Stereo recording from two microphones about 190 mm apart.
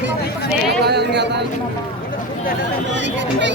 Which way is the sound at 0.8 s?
60° right (ahead or behind).